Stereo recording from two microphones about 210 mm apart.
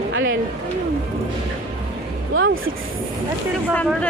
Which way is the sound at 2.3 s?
70° right (ahead or behind).